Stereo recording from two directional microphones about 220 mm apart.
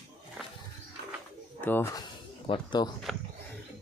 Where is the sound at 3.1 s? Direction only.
Centre (ahead or behind).